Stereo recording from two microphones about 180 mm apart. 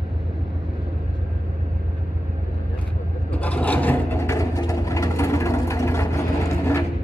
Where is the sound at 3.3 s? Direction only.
10° left (ahead or behind).